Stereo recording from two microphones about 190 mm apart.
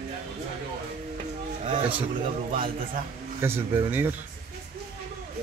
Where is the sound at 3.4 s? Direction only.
15° right (ahead or behind).